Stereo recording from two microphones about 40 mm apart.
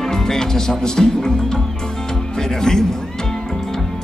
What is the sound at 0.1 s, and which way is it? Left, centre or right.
Speech, centre.